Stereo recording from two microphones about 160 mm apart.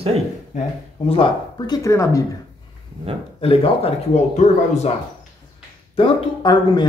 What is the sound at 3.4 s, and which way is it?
Speech, 35° left (ahead or behind).